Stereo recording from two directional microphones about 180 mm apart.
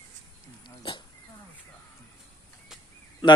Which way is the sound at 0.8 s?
25° left (ahead or behind).